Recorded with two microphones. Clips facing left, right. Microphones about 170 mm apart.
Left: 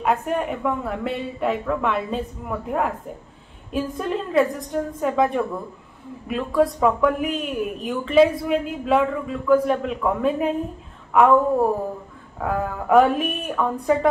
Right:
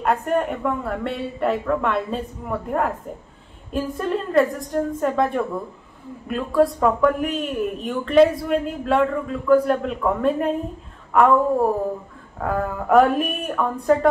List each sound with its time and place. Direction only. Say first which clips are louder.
0.0 s speech: right 2 dB; centre (ahead or behind)
12.4 s speech: right 1 dB; centre (ahead or behind)